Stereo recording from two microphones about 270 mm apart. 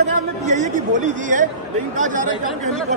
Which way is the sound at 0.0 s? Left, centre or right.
Right.